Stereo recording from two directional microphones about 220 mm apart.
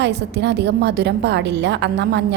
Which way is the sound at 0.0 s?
50° right (ahead or behind).